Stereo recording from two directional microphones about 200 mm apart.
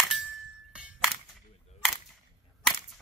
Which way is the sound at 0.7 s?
5° right (ahead or behind).